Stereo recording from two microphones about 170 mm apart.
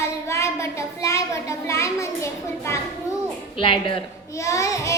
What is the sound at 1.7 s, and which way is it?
Speech, 15° left (ahead or behind).